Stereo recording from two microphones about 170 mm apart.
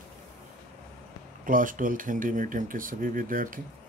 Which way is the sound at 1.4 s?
55° right (ahead or behind).